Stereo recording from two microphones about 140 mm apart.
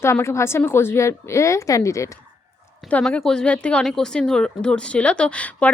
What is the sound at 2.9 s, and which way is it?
Speech, 5° left (ahead or behind).